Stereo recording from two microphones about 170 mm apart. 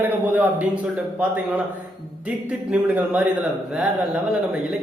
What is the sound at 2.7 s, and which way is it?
Speech, 5° right (ahead or behind).